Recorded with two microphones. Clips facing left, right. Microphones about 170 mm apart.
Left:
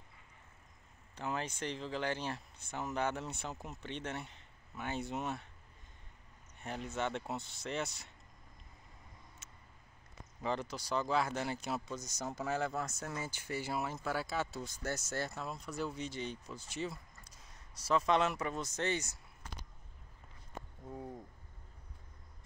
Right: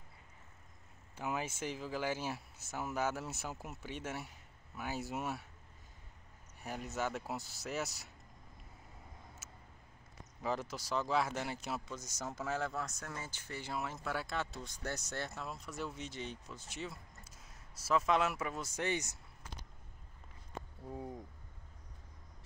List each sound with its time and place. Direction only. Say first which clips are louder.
1.1 s speech: even; 10° right (ahead or behind)
6.6 s speech: left 1 dB; 5° right (ahead or behind)
9.4 s a sound: right 3 dB; 5° right (ahead or behind)
10.4 s speech: left 1 dB; centre (ahead or behind)